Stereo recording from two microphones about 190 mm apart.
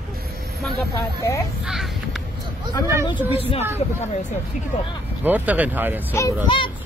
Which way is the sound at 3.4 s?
30° left (ahead or behind).